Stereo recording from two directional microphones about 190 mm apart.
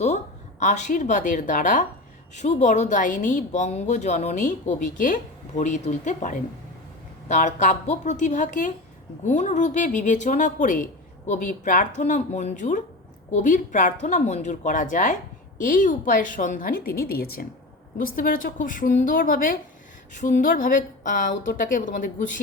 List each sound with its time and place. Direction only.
0.6 s a woman's voice: 40° left (ahead or behind)